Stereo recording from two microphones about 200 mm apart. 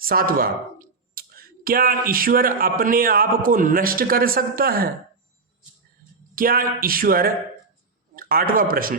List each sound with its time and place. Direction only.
0.0 s speech: 45° right (ahead or behind)
6.3 s a man's voice: 45° right (ahead or behind)